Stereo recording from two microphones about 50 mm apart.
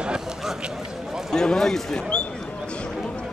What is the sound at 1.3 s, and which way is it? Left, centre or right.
Speech, centre.